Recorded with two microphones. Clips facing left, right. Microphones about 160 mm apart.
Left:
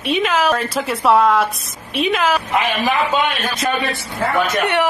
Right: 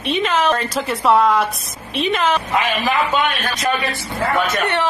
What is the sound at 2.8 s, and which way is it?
Speech, 20° left (ahead or behind).